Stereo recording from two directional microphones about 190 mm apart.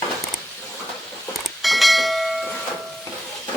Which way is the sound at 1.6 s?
Centre (ahead or behind).